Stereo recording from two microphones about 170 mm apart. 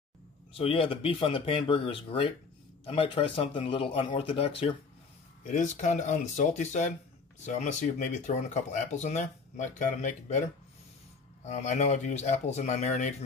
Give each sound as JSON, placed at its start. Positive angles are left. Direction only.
{"t": 0.6, "sound": "speech", "side_deg": 35}
{"t": 5.4, "sound": "speech", "side_deg": 50}
{"t": 11.4, "sound": "speech", "side_deg": 40}